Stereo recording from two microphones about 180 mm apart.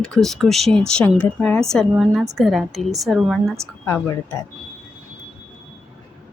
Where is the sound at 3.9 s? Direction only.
15° left (ahead or behind).